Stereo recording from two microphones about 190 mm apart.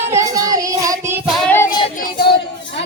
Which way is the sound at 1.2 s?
10° left (ahead or behind).